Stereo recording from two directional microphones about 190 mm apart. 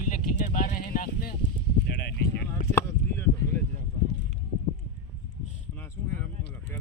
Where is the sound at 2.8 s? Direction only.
15° left (ahead or behind).